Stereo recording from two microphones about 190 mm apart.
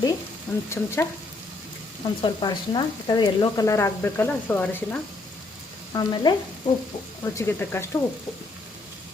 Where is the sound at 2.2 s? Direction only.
25° left (ahead or behind); by 5.0 s 10° left (ahead or behind).